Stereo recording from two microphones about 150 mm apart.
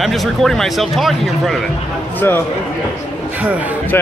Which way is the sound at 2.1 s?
15° left (ahead or behind).